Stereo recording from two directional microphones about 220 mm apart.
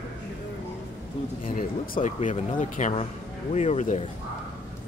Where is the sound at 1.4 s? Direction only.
40° left (ahead or behind).